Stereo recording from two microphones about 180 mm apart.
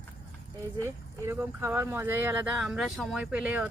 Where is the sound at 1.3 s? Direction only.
15° right (ahead or behind).